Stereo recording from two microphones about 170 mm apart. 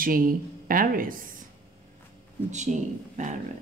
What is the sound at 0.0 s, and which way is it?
Speech, 55° right (ahead or behind).